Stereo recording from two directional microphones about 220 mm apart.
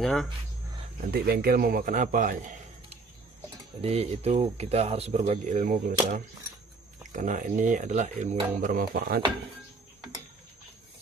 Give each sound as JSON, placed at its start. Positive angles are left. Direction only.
{"t": 0.0, "sound": "speech", "side_deg": 0}
{"t": 1.1, "sound": "a man's voice", "side_deg": -45}
{"t": 7.1, "sound": "speech", "side_deg": -35}